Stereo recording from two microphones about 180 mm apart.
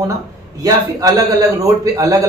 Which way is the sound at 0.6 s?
20° right (ahead or behind).